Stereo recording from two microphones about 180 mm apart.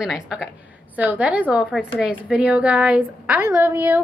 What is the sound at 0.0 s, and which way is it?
A woman's voice, centre (ahead or behind).